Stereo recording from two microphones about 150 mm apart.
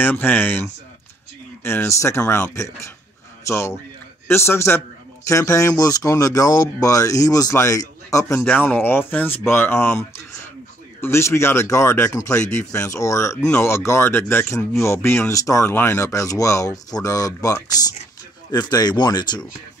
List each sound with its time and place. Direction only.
0.0 s speech: 15° left (ahead or behind)
8.4 s speech: 10° left (ahead or behind); by 19.4 s 25° left (ahead or behind)